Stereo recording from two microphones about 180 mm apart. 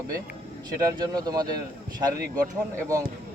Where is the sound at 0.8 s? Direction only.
20° right (ahead or behind).